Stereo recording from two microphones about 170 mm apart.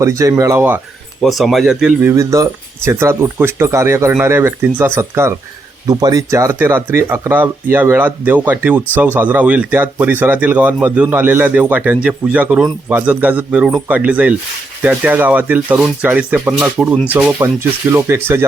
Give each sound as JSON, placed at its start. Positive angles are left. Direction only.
{"t": 0.0, "sound": "speech", "side_deg": -20}
{"t": 1.2, "sound": "speech", "side_deg": 0}